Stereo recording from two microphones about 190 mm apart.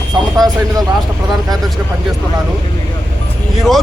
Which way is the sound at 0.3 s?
Centre (ahead or behind).